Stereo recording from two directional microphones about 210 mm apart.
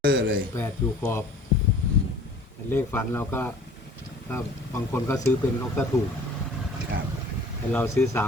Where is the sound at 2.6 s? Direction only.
10° left (ahead or behind).